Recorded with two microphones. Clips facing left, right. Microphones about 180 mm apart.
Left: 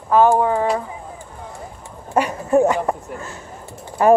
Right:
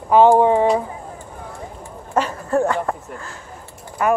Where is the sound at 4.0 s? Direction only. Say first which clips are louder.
Left 6 dB; 30° left (ahead or behind).